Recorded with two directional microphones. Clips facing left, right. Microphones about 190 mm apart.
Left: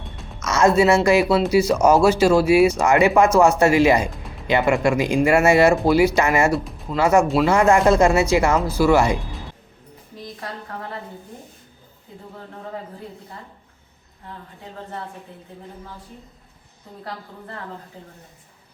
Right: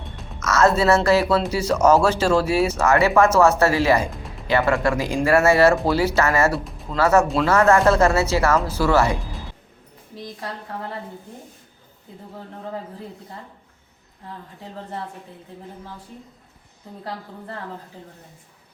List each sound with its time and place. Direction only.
0.3 s speech: 15° left (ahead or behind)
6.5 s speech: centre (ahead or behind)
6.9 s speech: 15° left (ahead or behind)